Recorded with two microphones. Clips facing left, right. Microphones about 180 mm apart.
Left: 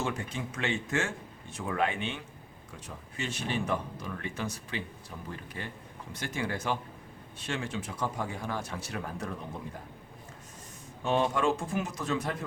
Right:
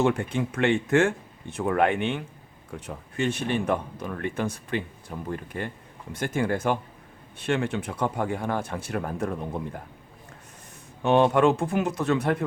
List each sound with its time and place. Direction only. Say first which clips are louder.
0.0 s speech: right 10 dB; 60° right (ahead or behind)
11.0 s speech: right 8 dB; 65° right (ahead or behind)